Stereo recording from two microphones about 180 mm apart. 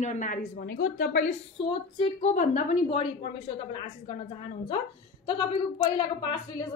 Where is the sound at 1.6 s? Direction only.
30° left (ahead or behind).